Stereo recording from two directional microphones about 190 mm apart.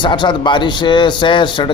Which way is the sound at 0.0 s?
25° left (ahead or behind).